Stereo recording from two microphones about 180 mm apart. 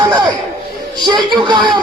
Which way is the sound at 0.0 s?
25° right (ahead or behind).